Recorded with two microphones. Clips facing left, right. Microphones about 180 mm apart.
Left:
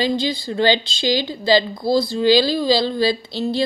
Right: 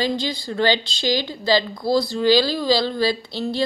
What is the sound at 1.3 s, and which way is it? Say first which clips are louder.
Speech: left 3 dB; 15° left (ahead or behind).